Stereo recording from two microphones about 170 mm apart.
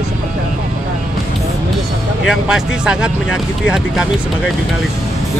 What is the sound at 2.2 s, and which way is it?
Speech, 5° right (ahead or behind).